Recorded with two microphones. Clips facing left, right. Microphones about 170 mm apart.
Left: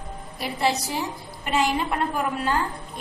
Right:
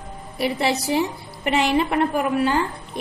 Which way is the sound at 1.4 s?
70° right (ahead or behind).